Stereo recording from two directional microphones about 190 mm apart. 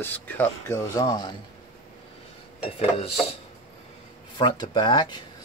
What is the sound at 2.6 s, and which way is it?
Dishes, 30° left (ahead or behind).